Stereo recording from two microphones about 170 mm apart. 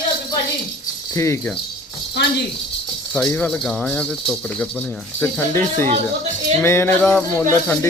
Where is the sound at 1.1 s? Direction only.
15° left (ahead or behind).